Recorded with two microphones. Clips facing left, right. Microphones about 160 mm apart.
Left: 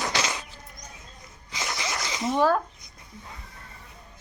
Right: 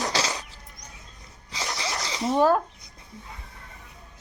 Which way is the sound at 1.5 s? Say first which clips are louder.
Right 1 dB; 35° right (ahead or behind).